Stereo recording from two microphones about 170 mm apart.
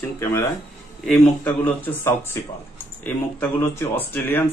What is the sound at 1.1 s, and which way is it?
Speech, 10° left (ahead or behind).